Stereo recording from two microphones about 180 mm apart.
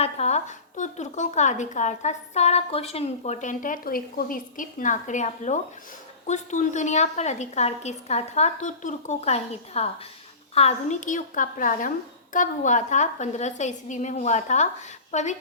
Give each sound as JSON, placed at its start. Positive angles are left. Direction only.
{"t": 0.0, "sound": "a woman's voice", "side_deg": 35}